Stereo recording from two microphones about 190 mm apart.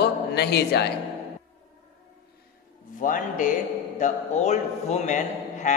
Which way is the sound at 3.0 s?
45° left (ahead or behind).